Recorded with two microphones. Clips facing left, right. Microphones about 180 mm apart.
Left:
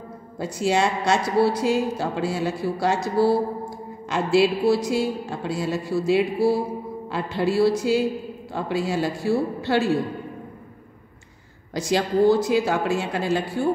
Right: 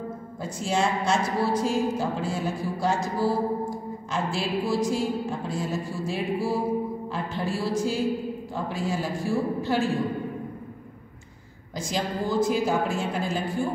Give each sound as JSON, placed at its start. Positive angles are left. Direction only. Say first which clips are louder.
{"t": 0.4, "sound": "a woman's voice", "louder": "left 5 dB", "side_deg": 75}
{"t": 11.7, "sound": "a woman's voice", "louder": "left 7 dB", "side_deg": 75}